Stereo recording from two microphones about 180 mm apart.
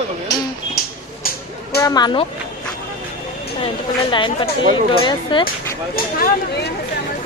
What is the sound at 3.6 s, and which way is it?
Speech, 25° left (ahead or behind).